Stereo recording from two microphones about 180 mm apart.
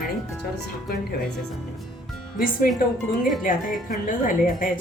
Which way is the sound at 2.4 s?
50° left (ahead or behind).